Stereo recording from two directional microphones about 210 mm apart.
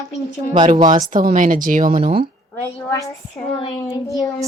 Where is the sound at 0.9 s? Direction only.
35° right (ahead or behind).